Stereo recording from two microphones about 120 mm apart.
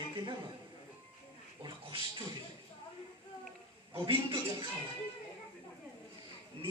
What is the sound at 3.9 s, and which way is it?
Speech, 45° right (ahead or behind).